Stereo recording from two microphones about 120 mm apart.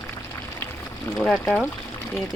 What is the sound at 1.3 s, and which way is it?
Speech, centre (ahead or behind).